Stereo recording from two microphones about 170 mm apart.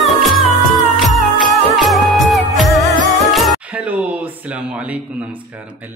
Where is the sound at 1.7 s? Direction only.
Centre (ahead or behind).